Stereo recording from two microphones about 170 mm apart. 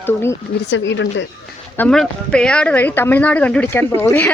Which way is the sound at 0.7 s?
90° left.